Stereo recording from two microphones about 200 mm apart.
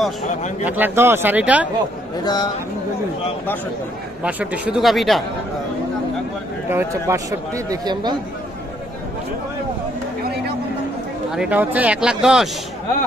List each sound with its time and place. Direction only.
0.7 s speech: 10° right (ahead or behind)
2.2 s speech: 20° left (ahead or behind)
4.2 s speech: 5° right (ahead or behind)
6.7 s speech: 10° right (ahead or behind)
11.3 s speech: 5° right (ahead or behind)